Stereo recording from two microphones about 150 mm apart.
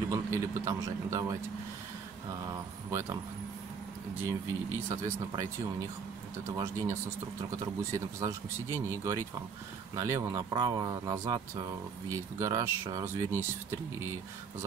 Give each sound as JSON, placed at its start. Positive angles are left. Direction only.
{"t": 0.1, "sound": "speech", "side_deg": -20}
{"t": 2.4, "sound": "speech", "side_deg": -20}
{"t": 4.2, "sound": "speech", "side_deg": -20}
{"t": 6.5, "sound": "speech", "side_deg": -20}
{"t": 8.2, "sound": "speech", "side_deg": -20}